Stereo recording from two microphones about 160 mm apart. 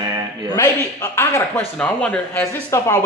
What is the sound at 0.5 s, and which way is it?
Speech, 20° left (ahead or behind).